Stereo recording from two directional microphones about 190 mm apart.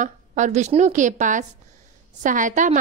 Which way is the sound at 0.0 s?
40° right (ahead or behind).